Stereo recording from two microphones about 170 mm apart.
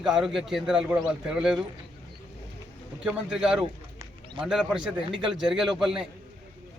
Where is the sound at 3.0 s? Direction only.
5° right (ahead or behind).